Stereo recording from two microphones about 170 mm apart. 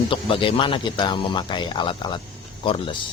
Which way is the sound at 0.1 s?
30° left (ahead or behind).